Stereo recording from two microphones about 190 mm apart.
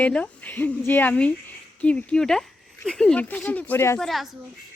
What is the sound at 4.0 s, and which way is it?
Speech, centre (ahead or behind).